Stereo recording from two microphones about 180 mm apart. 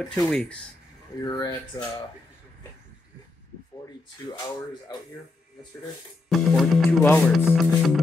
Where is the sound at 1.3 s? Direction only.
20° left (ahead or behind).